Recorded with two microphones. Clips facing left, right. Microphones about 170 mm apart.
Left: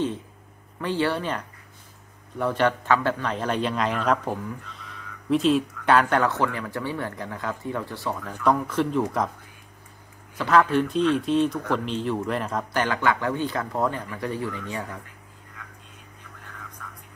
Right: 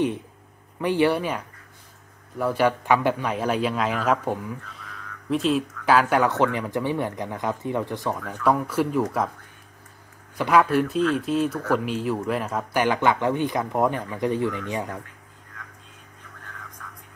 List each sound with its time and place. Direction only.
0.7 s a man's voice: 15° right (ahead or behind)
6.3 s speech: 20° right (ahead or behind)
10.3 s speech: 10° right (ahead or behind)